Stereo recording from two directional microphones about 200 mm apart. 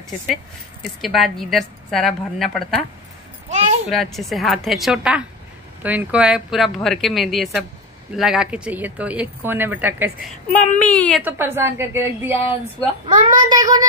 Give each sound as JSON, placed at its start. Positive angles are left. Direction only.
{"t": 1.0, "sound": "speech", "side_deg": 0}
{"t": 3.4, "sound": "a sound", "side_deg": -35}
{"t": 3.9, "sound": "speech", "side_deg": 0}
{"t": 10.8, "sound": "a woman's voice", "side_deg": 5}
{"t": 11.2, "sound": "speech", "side_deg": -10}
{"t": 13.1, "sound": "a child's voice", "side_deg": -40}
{"t": 13.5, "sound": "a child's voice", "side_deg": -20}